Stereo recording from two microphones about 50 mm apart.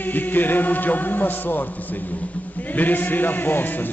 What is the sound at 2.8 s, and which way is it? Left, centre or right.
A man's voice, left.